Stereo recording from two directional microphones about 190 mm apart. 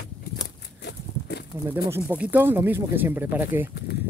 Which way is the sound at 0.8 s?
60° left (ahead or behind).